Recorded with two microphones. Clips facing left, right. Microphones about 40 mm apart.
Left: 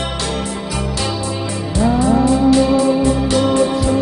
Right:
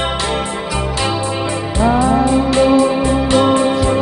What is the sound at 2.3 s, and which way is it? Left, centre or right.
Music, right.